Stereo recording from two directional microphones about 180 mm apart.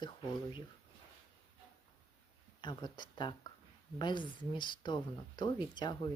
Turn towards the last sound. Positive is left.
turn(degrees=25)  # may be behind; listen again after turning